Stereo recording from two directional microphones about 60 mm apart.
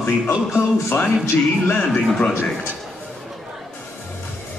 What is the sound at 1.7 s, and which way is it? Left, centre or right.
Speech, centre.